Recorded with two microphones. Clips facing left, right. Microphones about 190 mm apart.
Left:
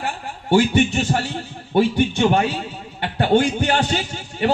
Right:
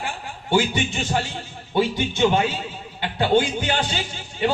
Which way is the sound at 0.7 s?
55° left (ahead or behind).